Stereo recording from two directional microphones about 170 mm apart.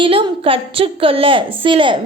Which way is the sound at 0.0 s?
30° right (ahead or behind).